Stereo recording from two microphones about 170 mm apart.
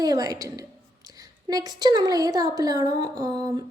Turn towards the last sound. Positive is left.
turn(degrees=-25)  # may be behind; listen again after turning